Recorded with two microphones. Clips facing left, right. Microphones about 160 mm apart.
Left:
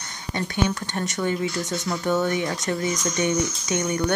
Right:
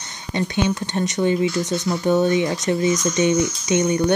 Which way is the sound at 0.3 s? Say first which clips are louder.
Right 4 dB; 20° right (ahead or behind).